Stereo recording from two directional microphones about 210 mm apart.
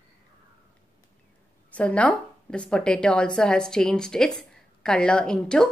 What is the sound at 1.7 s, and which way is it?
A woman's voice, 5° left (ahead or behind).